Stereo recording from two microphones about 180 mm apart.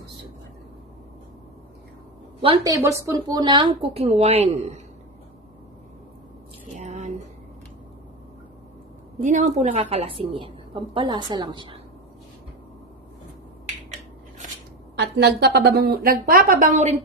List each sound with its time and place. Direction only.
2.4 s a woman's voice: 25° right (ahead or behind)
6.8 s a sound: 40° right (ahead or behind)
9.2 s a woman's voice: 40° right (ahead or behind)
15.0 s a woman's voice: 70° right (ahead or behind); by 17.0 s 40° right (ahead or behind)